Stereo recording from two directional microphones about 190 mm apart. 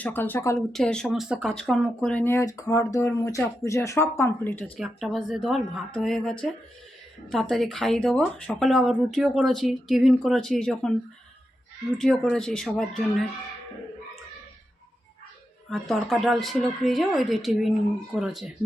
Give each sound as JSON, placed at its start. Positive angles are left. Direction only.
{"t": 0.0, "sound": "speech", "side_deg": 10}
{"t": 4.8, "sound": "speech", "side_deg": 0}
{"t": 11.9, "sound": "speech", "side_deg": 5}
{"t": 15.7, "sound": "speech", "side_deg": 0}